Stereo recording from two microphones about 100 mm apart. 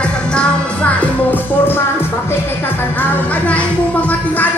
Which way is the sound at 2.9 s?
15° left (ahead or behind).